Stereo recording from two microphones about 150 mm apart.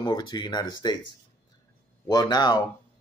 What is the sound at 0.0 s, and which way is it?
Speech, 30° left (ahead or behind).